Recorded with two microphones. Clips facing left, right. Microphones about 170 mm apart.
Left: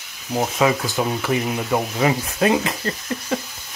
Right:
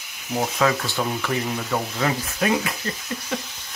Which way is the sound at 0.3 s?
15° left (ahead or behind).